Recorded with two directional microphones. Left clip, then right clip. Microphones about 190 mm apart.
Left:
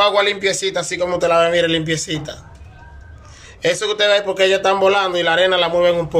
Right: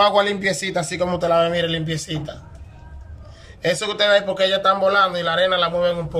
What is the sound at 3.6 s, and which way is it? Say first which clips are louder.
A man's voice: left 3 dB; centre (ahead or behind).